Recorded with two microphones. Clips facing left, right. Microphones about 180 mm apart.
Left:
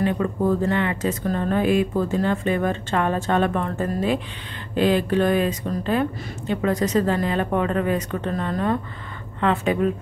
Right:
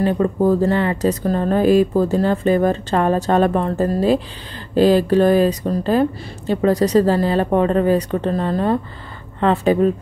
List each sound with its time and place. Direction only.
0.0 s speech: 35° right (ahead or behind)